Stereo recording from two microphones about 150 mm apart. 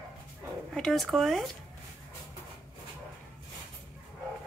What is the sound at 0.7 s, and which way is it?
Speech, centre (ahead or behind).